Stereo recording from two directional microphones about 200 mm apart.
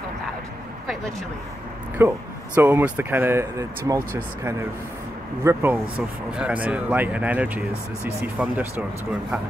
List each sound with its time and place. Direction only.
2.0 s speech: 10° right (ahead or behind)